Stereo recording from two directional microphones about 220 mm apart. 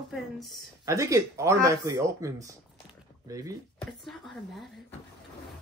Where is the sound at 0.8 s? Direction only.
15° right (ahead or behind).